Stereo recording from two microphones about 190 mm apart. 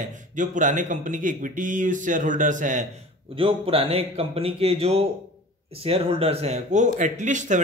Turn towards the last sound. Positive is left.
turn(degrees=-40)  # may be behind; listen again after turning